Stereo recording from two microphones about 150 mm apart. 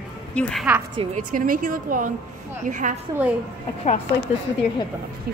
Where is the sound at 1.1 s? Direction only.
65° right (ahead or behind).